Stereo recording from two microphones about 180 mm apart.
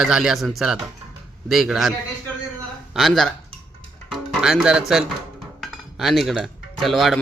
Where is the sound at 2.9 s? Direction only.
Centre (ahead or behind).